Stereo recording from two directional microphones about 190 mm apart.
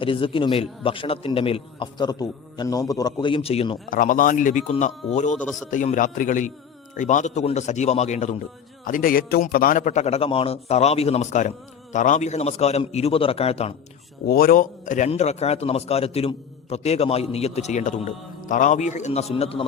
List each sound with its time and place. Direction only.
0.0 s a man's voice: 25° left (ahead or behind)
3.8 s a man's voice: 45° left (ahead or behind)
5.4 s a man's voice: centre (ahead or behind)
5.7 s a man's voice: 40° left (ahead or behind)
14.3 s a man's voice: 50° left (ahead or behind); by 19.6 s 30° left (ahead or behind)